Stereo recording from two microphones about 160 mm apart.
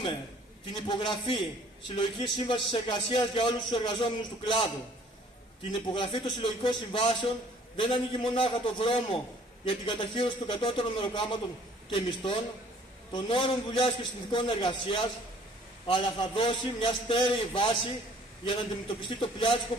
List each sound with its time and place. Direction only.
0.7 s a man's voice: 30° left (ahead or behind)
5.7 s a man's voice: 30° left (ahead or behind)